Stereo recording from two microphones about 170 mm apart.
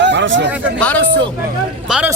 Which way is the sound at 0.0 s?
90° right.